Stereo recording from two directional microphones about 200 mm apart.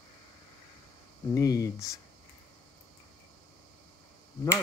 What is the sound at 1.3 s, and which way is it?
Speech, 15° left (ahead or behind).